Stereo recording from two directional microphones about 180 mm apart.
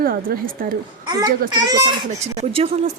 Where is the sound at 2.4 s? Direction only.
35° right (ahead or behind).